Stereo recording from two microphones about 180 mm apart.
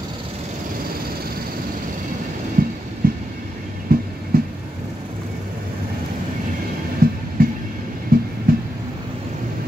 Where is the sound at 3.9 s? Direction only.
55° right (ahead or behind).